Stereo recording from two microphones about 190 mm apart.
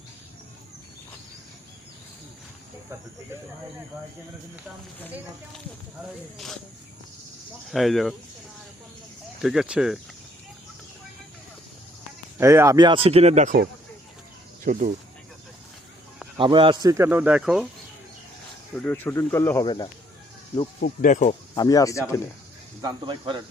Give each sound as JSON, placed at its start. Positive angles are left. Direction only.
{"t": 7.7, "sound": "speech", "side_deg": 0}
{"t": 9.4, "sound": "speech", "side_deg": 0}
{"t": 12.4, "sound": "speech", "side_deg": -15}
{"t": 16.4, "sound": "speech", "side_deg": -25}
{"t": 18.7, "sound": "speech", "side_deg": 10}
{"t": 20.8, "sound": "speech", "side_deg": 45}
{"t": 21.5, "sound": "speech", "side_deg": 20}
{"t": 22.8, "sound": "speech", "side_deg": -20}